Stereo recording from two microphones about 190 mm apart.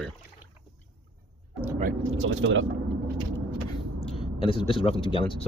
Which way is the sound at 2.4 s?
90° right.